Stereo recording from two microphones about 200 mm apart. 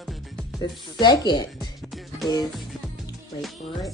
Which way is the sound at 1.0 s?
20° left (ahead or behind).